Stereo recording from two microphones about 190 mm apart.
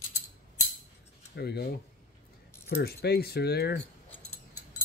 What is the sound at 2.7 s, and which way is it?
Speech, 55° left (ahead or behind).